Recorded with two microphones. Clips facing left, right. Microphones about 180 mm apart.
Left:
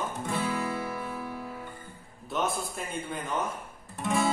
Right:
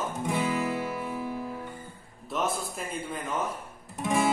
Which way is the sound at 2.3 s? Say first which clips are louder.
Even; centre (ahead or behind).